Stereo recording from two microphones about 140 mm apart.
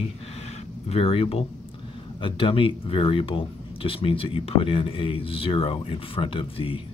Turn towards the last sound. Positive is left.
turn(degrees=40)  # may be behind; listen again after turning